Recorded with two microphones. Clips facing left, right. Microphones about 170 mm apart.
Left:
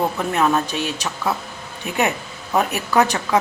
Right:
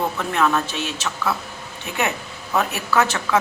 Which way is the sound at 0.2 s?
25° left (ahead or behind).